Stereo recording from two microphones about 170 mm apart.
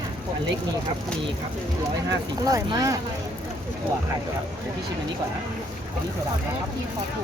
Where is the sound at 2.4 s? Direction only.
20° right (ahead or behind).